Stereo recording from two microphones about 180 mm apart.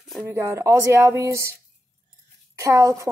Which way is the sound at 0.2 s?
15° right (ahead or behind).